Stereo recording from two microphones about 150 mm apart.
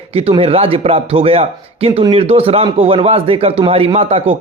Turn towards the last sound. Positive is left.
turn(degrees=-40)  # may be behind; listen again after turning